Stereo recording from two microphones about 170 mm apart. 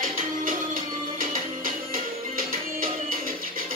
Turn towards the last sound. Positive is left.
turn(degrees=-55)  # may be behind; listen again after turning